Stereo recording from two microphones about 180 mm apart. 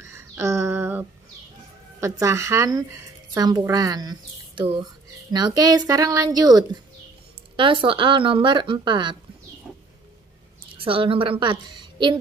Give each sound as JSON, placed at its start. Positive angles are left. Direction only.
{"t": 0.0, "sound": "a sound", "side_deg": -15}
{"t": 2.0, "sound": "speech", "side_deg": -15}
{"t": 10.8, "sound": "a woman's voice", "side_deg": -30}